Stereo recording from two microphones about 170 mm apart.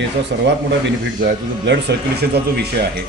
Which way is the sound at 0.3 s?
90° right.